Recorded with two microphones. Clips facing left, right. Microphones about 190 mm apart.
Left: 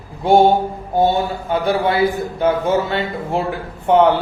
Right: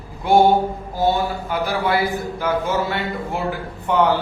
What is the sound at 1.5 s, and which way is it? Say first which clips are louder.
A man's voice: left 4 dB; 25° left (ahead or behind).